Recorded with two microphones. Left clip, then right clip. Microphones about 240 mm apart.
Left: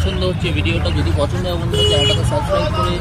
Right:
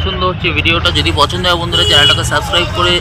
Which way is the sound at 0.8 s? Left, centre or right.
Right.